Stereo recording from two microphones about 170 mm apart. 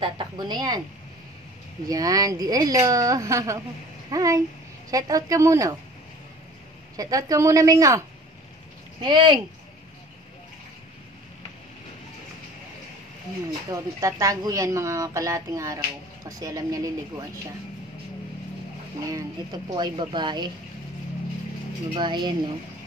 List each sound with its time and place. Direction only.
0.0 s speech: 30° right (ahead or behind)
1.9 s speech: 20° right (ahead or behind)
7.0 s speech: 20° right (ahead or behind)
9.0 s speech: 25° right (ahead or behind)
13.5 s speech: 20° right (ahead or behind)
19.0 s speech: 20° right (ahead or behind)
21.9 s speech: 25° right (ahead or behind)